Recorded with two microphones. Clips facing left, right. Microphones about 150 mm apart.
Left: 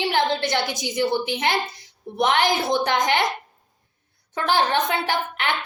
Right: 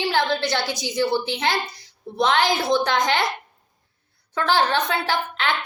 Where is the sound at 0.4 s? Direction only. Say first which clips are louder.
Even; 20° left (ahead or behind).